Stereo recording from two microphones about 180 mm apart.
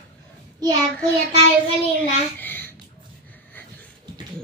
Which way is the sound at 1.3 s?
35° right (ahead or behind).